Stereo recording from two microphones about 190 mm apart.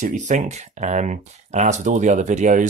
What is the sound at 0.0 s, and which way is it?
Speech, 40° right (ahead or behind).